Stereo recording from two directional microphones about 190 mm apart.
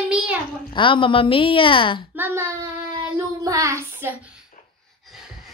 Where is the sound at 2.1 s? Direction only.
10° right (ahead or behind).